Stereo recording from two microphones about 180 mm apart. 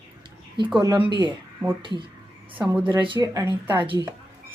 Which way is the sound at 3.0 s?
25° right (ahead or behind).